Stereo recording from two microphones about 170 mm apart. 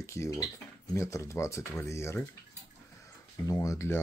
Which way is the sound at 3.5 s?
20° left (ahead or behind).